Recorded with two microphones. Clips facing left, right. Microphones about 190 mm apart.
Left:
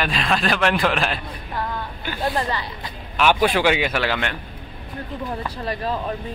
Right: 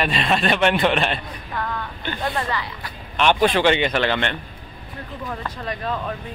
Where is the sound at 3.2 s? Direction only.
5° left (ahead or behind).